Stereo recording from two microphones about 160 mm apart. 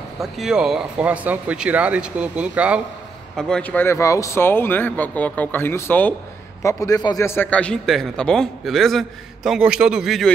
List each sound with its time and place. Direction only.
0.2 s speech: 5° right (ahead or behind)
3.3 s a man's voice: 5° left (ahead or behind); by 7.2 s 25° left (ahead or behind)
7.2 s a man's voice: 10° left (ahead or behind)